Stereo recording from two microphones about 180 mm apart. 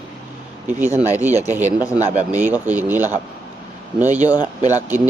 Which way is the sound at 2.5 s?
10° right (ahead or behind).